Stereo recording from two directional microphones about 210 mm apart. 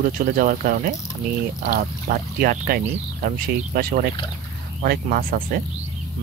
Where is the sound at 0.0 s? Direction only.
40° right (ahead or behind).